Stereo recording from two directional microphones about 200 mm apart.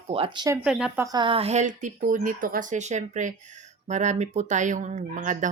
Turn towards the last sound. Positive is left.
turn(degrees=-40)  # may be behind; listen again after turning